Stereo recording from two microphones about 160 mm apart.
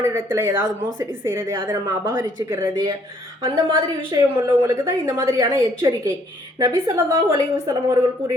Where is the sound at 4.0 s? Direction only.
25° right (ahead or behind).